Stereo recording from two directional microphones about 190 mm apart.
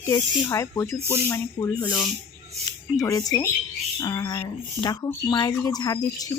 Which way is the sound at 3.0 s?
20° left (ahead or behind).